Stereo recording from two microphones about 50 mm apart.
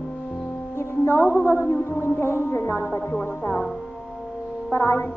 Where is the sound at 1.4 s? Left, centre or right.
Left.